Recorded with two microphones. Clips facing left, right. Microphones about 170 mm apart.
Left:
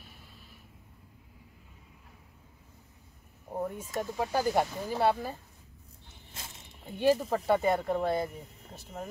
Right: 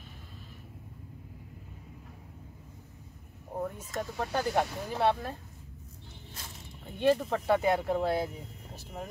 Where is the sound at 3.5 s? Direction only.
5° left (ahead or behind).